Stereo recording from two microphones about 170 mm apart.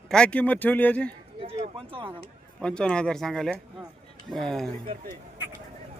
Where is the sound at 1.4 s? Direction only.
30° right (ahead or behind).